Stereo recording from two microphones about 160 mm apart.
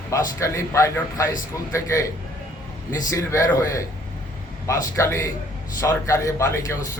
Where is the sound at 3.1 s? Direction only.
20° left (ahead or behind).